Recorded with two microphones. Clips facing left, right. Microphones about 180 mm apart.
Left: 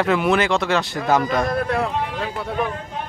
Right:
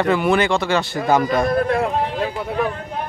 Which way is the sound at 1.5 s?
40° right (ahead or behind).